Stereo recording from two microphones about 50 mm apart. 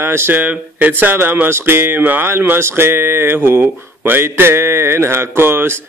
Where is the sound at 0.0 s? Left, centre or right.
Right.